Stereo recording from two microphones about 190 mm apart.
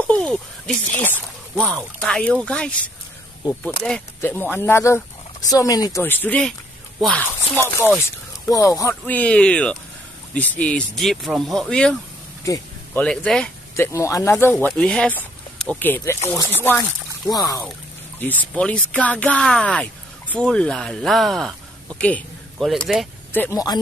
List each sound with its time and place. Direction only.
0.0 s a sound: 5° left (ahead or behind)
0.9 s speech: 10° left (ahead or behind)
7.5 s speech: 15° left (ahead or behind)
13.9 s speech: 15° left (ahead or behind)
17.3 s speech: 20° left (ahead or behind); by 23.0 s centre (ahead or behind)
23.3 s speech: 15° left (ahead or behind)